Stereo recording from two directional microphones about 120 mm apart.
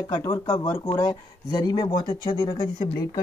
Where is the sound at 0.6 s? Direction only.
40° left (ahead or behind).